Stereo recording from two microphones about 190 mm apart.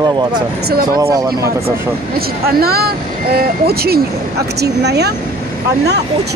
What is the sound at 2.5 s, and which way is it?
Speech, 55° right (ahead or behind).